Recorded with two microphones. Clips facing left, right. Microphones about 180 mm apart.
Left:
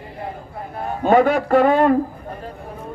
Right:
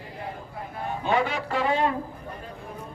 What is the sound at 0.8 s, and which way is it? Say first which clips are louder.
A man's voice: left 10 dB; 50° left (ahead or behind).